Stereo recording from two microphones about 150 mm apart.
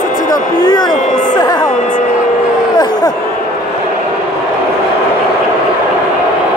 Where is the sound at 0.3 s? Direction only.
30° left (ahead or behind).